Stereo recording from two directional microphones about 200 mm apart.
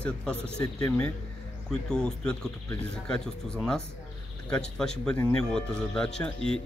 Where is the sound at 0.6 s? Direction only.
15° left (ahead or behind).